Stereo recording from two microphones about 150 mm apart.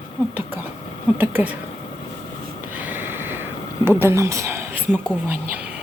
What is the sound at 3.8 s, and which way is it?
A woman's voice, 15° right (ahead or behind).